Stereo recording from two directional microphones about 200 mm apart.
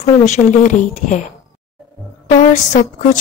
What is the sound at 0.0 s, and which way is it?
Speech, 35° left (ahead or behind).